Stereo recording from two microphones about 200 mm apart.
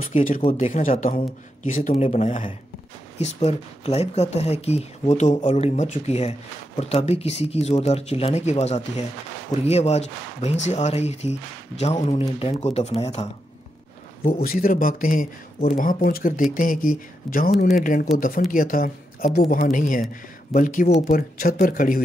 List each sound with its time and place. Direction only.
0.0 s speech: 40° left (ahead or behind)
0.4 s speech: 30° left (ahead or behind)
14.2 s a man's voice: 45° left (ahead or behind)